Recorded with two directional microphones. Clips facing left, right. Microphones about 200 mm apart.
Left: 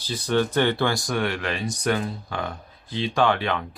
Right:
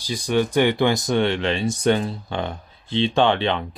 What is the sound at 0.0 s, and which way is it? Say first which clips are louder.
Speech: right 2 dB; 15° right (ahead or behind).